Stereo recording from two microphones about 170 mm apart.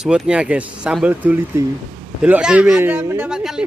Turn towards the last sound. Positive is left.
turn(degrees=-5)  # may be behind; listen again after turning